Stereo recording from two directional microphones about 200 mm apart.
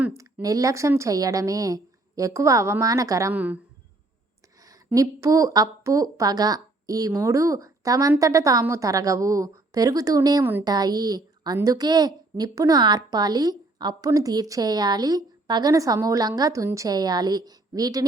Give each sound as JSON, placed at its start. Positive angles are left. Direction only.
{"t": 0.0, "sound": "a woman's voice", "side_deg": -10}
{"t": 4.6, "sound": "a woman's voice", "side_deg": -15}